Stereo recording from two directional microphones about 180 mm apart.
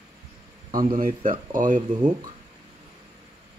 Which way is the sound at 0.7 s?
50° right (ahead or behind).